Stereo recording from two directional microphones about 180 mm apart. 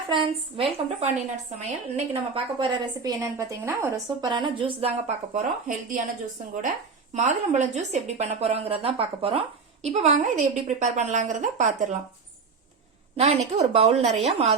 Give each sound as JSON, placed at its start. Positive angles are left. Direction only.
{"t": 0.1, "sound": "a woman's voice", "side_deg": -30}
{"t": 7.1, "sound": "a woman's voice", "side_deg": -40}
{"t": 13.1, "sound": "a woman's voice", "side_deg": -35}